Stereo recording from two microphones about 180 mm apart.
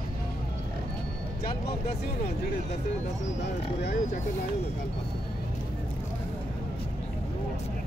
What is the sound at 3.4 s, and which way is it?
Speech, 70° left (ahead or behind).